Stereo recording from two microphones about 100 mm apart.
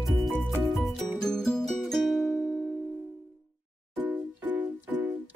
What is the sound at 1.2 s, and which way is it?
Music, 5° left (ahead or behind).